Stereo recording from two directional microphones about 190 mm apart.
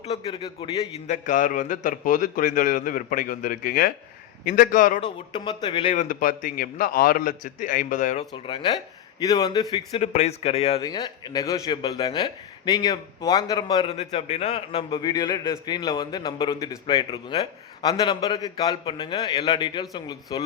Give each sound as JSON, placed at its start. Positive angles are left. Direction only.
{"t": 0.2, "sound": "a man's voice", "side_deg": 30}
{"t": 0.9, "sound": "a man's voice", "side_deg": 40}
{"t": 4.9, "sound": "a man's voice", "side_deg": 25}
{"t": 5.9, "sound": "a man's voice", "side_deg": 40}
{"t": 8.3, "sound": "a man's voice", "side_deg": 25}
{"t": 10.8, "sound": "a man's voice", "side_deg": 20}
{"t": 13.9, "sound": "a man's voice", "side_deg": 35}